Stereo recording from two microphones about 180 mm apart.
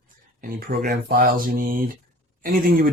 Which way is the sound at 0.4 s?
55° right (ahead or behind).